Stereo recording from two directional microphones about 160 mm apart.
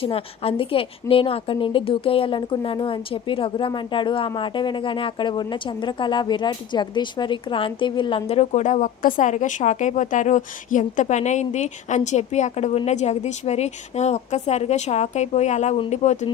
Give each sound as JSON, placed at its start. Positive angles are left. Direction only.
{"t": 0.0, "sound": "a woman's voice", "side_deg": 35}